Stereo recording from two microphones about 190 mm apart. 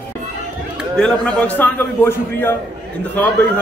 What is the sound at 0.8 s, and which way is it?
A woman's voice, 5° left (ahead or behind).